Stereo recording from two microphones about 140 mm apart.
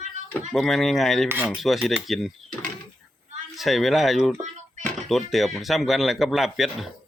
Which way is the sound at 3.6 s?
Centre (ahead or behind).